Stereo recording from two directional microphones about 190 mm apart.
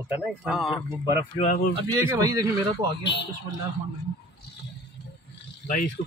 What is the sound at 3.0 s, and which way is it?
Speech, 65° left (ahead or behind).